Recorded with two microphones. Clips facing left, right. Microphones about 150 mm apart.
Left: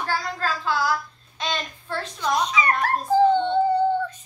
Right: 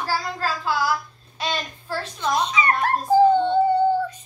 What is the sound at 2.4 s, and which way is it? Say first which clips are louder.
Speech: even; 30° right (ahead or behind).